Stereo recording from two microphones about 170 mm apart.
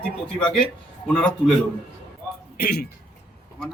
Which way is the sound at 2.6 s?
70° left (ahead or behind).